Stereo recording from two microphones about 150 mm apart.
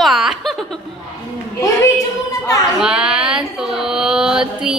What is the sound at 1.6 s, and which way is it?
A woman's voice, 20° left (ahead or behind).